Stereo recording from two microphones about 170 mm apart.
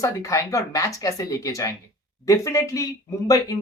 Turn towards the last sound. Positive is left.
turn(degrees=20)  # may be behind; listen again after turning